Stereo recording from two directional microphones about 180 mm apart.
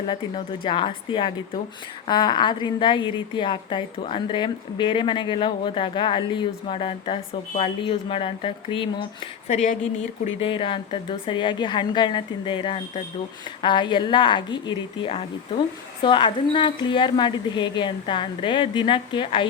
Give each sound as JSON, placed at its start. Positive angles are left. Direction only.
{"t": 0.1, "sound": "speech", "side_deg": 25}
{"t": 9.5, "sound": "speech", "side_deg": 40}
{"t": 10.4, "sound": "speech", "side_deg": 30}
{"t": 16.0, "sound": "speech", "side_deg": 25}